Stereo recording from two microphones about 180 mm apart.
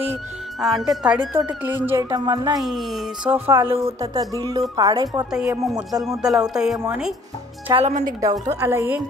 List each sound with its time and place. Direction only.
0.6 s speech: centre (ahead or behind)
1.6 s music: 10° right (ahead or behind)
2.6 s speech: centre (ahead or behind)
3.3 s music: 10° right (ahead or behind)
3.8 s speech: 20° right (ahead or behind)
5.7 s speech: centre (ahead or behind)
7.6 s speech: 30° right (ahead or behind)
8.2 s music: 20° right (ahead or behind)